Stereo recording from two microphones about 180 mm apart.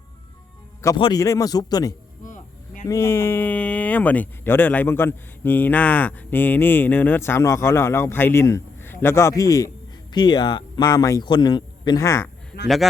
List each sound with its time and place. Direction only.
0.9 s a man's voice: 25° left (ahead or behind)
2.2 s a sound: 45° left (ahead or behind)
2.9 s speech: 15° left (ahead or behind)
12.6 s speech: centre (ahead or behind)